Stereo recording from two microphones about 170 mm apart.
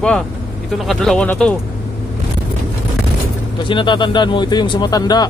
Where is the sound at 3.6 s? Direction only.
30° left (ahead or behind).